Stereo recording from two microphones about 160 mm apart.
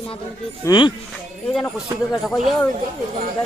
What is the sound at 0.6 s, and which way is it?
Speech, 25° left (ahead or behind).